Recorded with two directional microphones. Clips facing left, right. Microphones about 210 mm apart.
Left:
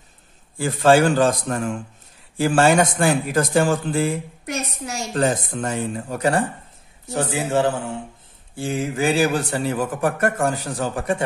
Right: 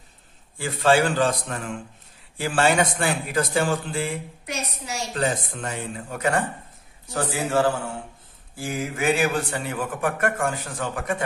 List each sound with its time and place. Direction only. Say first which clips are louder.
0.6 s a man's voice: left 4 dB; 45° left (ahead or behind)
7.1 s a man's voice: left 3 dB; 25° left (ahead or behind)